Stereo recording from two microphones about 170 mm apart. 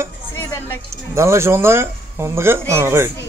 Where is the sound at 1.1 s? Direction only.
15° right (ahead or behind).